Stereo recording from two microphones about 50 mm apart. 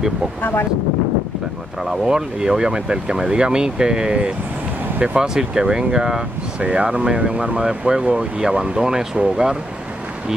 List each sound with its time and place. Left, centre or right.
0.4 s speech: left
1.9 s speech: centre